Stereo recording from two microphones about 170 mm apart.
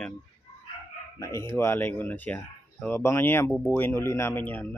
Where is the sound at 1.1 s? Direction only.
20° left (ahead or behind).